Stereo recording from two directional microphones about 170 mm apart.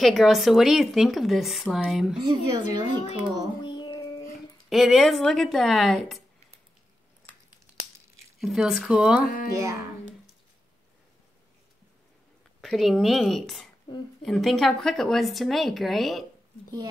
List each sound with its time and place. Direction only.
0.0 s speech: centre (ahead or behind)
2.9 s speech: 25° right (ahead or behind)
3.6 s music: 25° left (ahead or behind)
4.6 s speech: centre (ahead or behind)
8.4 s speech: centre (ahead or behind)
9.5 s speech: 20° right (ahead or behind)
12.6 s speech: centre (ahead or behind)